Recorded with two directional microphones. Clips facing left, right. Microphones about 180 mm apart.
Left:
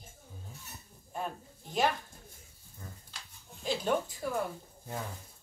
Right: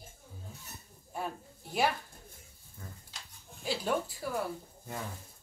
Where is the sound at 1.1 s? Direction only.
5° right (ahead or behind).